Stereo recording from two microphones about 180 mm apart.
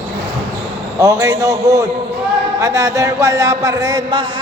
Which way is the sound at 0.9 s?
20° right (ahead or behind).